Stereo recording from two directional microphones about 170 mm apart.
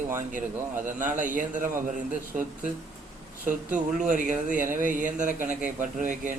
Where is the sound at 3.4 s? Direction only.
50° right (ahead or behind).